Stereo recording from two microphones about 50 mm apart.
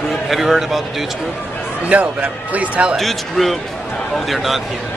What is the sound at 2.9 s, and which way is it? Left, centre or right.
A man's voice, centre.